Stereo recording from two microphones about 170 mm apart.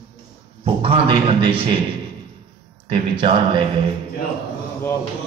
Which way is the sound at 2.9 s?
30° right (ahead or behind).